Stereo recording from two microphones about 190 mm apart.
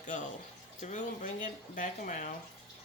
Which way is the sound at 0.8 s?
40° left (ahead or behind).